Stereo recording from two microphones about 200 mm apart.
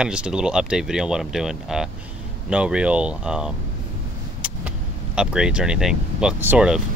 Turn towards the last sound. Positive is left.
turn(degrees=-5)  # may be behind; listen again after turning